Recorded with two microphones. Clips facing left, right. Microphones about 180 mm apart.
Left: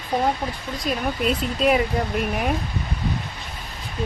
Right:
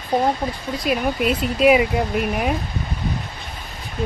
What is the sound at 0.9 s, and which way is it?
Speech, 10° right (ahead or behind).